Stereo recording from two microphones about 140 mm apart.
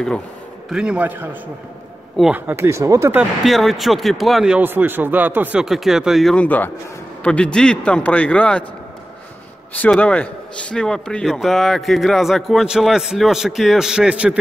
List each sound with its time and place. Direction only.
0.7 s a man's voice: 5° right (ahead or behind)
2.3 s speech: 15° right (ahead or behind)
3.4 s a man's voice: centre (ahead or behind)
9.8 s a man's voice: 10° left (ahead or behind); by 14.4 s 10° right (ahead or behind)